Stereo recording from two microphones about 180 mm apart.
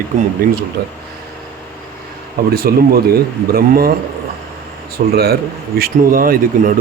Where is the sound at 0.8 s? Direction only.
60° right (ahead or behind).